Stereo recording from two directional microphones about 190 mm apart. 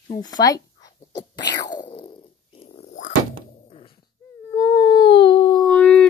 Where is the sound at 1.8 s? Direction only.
30° left (ahead or behind).